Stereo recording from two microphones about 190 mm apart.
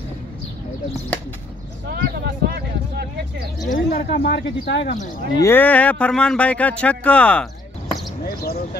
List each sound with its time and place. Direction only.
1.9 s speech: 55° right (ahead or behind)
3.6 s speech: 50° left (ahead or behind)
5.4 s speech: 10° left (ahead or behind)
8.2 s speech: 55° left (ahead or behind)